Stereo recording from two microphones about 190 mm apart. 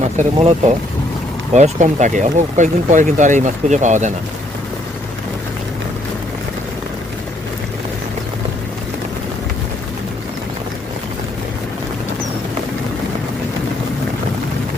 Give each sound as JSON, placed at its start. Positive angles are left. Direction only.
{"t": 0.0, "sound": "speech", "side_deg": -40}
{"t": 1.5, "sound": "speech", "side_deg": -40}